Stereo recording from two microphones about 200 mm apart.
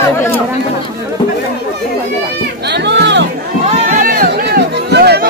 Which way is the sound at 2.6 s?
60° right (ahead or behind).